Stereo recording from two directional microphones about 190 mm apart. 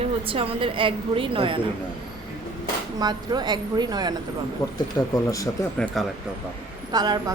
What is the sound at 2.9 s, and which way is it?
A woman's voice, 20° right (ahead or behind).